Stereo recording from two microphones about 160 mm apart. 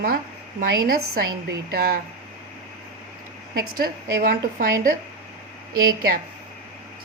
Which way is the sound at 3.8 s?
65° right (ahead or behind).